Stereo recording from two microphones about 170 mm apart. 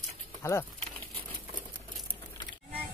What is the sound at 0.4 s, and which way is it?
Speech, 15° left (ahead or behind).